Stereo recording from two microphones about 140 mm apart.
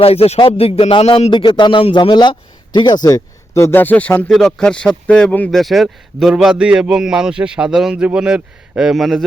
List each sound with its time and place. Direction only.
0.0 s a man's voice: 45° left (ahead or behind); by 9.2 s centre (ahead or behind)